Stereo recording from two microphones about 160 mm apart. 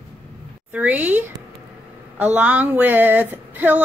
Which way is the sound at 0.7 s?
10° right (ahead or behind).